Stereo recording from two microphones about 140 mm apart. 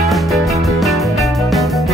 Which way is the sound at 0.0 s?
Centre (ahead or behind).